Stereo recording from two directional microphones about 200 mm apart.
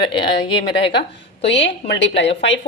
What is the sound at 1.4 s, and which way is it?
A woman's voice, 60° left (ahead or behind).